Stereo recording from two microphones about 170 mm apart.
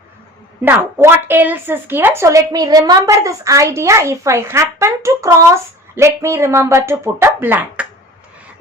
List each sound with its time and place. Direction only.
0.6 s a woman's voice: 10° right (ahead or behind)